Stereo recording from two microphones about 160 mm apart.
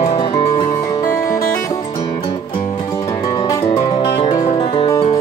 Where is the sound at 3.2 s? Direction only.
25° left (ahead or behind).